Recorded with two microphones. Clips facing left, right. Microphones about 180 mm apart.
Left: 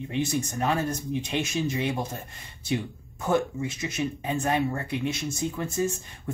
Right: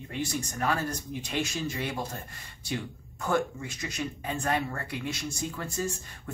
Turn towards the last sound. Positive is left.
turn(degrees=20)  # may be behind; listen again after turning